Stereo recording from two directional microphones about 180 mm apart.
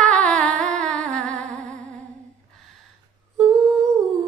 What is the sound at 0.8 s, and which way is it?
Humming, 5° left (ahead or behind).